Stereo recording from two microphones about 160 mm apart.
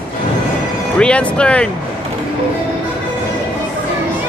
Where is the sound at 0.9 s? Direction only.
5° left (ahead or behind).